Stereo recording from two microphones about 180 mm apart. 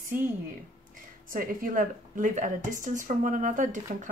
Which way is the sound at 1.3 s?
50° right (ahead or behind).